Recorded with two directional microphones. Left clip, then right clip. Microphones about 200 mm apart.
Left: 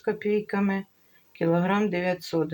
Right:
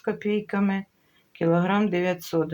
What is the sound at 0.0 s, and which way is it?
Speech, 5° right (ahead or behind).